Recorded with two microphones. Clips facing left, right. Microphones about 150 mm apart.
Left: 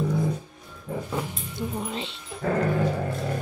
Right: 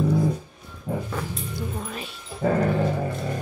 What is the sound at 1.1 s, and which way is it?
Dog, 20° left (ahead or behind).